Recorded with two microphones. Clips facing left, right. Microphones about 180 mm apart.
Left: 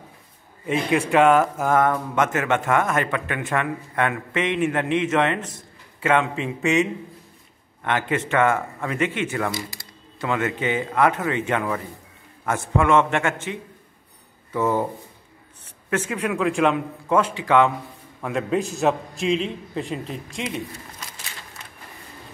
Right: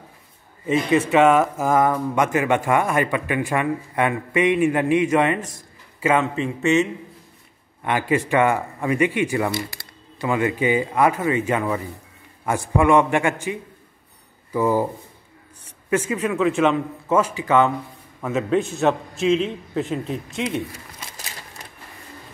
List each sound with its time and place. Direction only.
0.7 s a man's voice: centre (ahead or behind)
9.5 s camera: 60° right (ahead or behind)
10.2 s speech: 10° right (ahead or behind)
15.9 s a man's voice: 5° right (ahead or behind)